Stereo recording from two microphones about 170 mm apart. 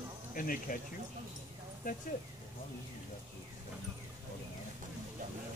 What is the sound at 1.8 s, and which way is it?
Speech, 55° left (ahead or behind).